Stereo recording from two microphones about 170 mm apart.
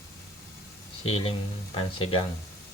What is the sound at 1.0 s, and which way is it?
Speech, 35° left (ahead or behind).